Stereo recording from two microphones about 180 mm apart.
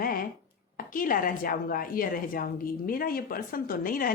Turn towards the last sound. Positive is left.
turn(degrees=50)  # may be behind; listen again after turning